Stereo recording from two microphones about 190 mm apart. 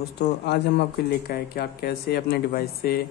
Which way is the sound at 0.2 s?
60° left (ahead or behind).